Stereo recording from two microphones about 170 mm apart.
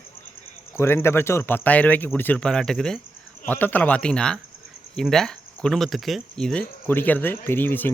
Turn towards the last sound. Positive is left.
turn(degrees=10)  # may be behind; listen again after turning